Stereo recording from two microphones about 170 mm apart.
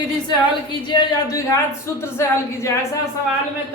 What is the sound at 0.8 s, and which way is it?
A woman's voice, 25° left (ahead or behind).